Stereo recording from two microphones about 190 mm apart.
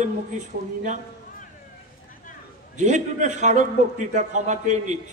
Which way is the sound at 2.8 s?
40° right (ahead or behind).